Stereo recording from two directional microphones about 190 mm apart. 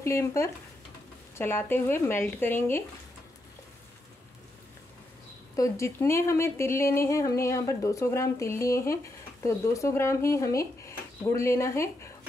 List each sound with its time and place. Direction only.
0.0 s speech: 15° left (ahead or behind)
5.6 s speech: 15° left (ahead or behind)